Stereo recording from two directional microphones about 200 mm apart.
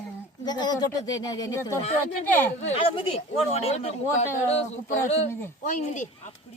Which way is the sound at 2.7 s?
25° left (ahead or behind).